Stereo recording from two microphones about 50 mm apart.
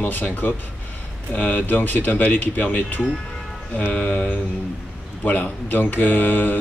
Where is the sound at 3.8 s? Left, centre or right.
Left.